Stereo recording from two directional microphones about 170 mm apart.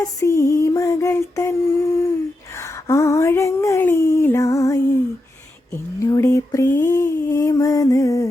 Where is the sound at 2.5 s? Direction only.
15° left (ahead or behind).